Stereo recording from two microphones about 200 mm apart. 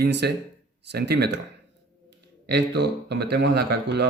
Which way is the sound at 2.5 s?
55° right (ahead or behind).